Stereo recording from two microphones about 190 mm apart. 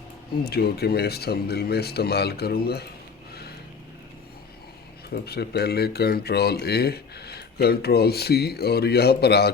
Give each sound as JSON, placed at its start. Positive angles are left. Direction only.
{"t": 0.4, "sound": "speech", "side_deg": 55}
{"t": 5.1, "sound": "speech", "side_deg": 60}